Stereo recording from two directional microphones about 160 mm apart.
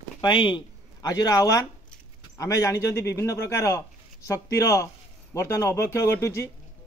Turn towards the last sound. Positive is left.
turn(degrees=15)  # may be behind; listen again after turning